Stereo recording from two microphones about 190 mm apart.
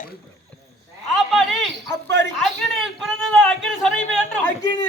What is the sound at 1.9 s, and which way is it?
Speech, 65° right (ahead or behind).